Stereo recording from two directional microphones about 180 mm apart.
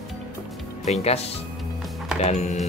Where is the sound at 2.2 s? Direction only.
40° left (ahead or behind).